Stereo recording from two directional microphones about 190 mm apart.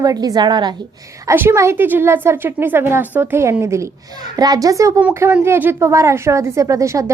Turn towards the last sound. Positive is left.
turn(degrees=-15)  # may be behind; listen again after turning